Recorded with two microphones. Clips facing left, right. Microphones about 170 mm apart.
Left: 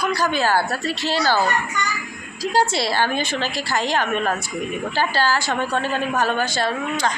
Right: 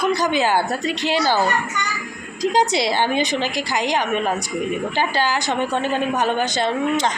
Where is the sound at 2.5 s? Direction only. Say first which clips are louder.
Even; 15° right (ahead or behind).